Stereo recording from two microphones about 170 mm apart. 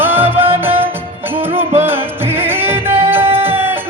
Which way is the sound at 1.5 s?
15° right (ahead or behind).